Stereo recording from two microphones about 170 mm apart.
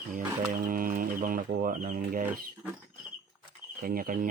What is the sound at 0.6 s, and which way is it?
Speech, 55° right (ahead or behind).